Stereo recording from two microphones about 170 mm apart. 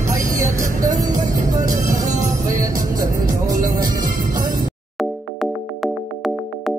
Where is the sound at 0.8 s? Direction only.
20° right (ahead or behind).